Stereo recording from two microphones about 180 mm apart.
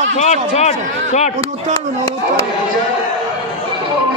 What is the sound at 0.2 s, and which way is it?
A man's voice, 40° left (ahead or behind).